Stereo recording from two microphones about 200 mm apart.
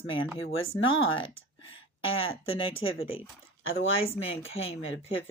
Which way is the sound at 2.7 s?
80° left.